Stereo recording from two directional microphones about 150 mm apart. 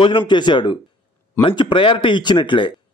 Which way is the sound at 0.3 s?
30° left (ahead or behind).